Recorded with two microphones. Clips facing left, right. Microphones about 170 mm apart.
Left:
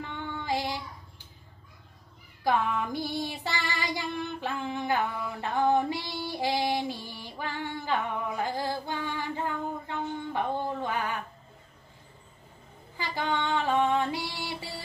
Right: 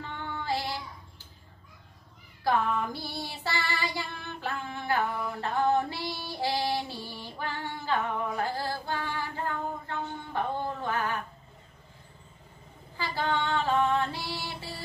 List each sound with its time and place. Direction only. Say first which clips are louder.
0.5 s child singing: left 2 dB; 15° left (ahead or behind)
2.4 s child singing: even; 15° left (ahead or behind)
7.1 s female singing: even; 15° left (ahead or behind)
12.9 s female singing: right 1 dB; 15° left (ahead or behind)